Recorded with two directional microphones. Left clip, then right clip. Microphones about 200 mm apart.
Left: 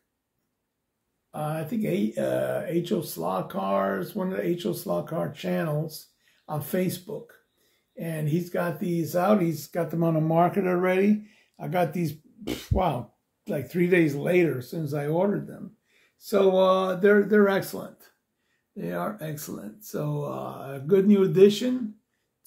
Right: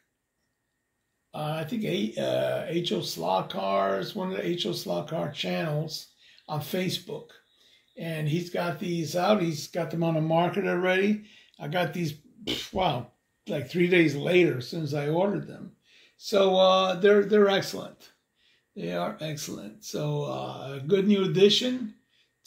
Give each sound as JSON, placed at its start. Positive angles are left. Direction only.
{"t": 1.7, "sound": "speech", "side_deg": 10}
{"t": 8.2, "sound": "speech", "side_deg": 10}
{"t": 10.4, "sound": "speech", "side_deg": 5}
{"t": 10.9, "sound": "speech", "side_deg": 15}